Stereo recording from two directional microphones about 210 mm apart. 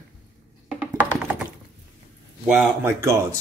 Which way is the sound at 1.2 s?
5° right (ahead or behind).